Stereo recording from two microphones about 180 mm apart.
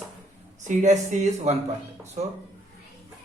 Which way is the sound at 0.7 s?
40° right (ahead or behind).